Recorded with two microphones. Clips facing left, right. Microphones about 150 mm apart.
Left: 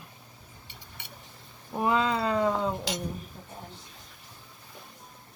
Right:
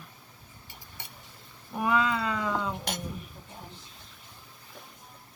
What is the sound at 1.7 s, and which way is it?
Speech, 30° left (ahead or behind).